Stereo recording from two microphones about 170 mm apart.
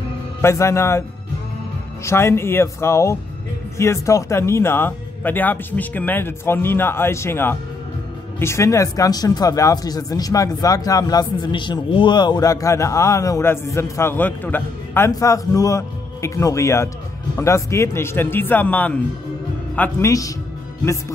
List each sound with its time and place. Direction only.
0.4 s speech: 15° left (ahead or behind)
2.0 s speech: 15° left (ahead or behind)